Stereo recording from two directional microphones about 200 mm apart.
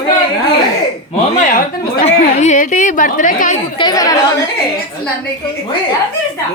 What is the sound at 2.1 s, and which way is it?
A woman's voice, 35° left (ahead or behind).